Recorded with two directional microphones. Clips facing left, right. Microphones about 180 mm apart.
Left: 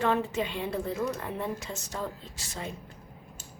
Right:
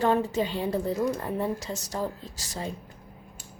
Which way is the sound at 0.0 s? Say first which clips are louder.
Right 3 dB; 35° right (ahead or behind).